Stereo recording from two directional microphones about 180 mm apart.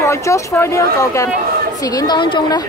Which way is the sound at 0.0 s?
15° left (ahead or behind).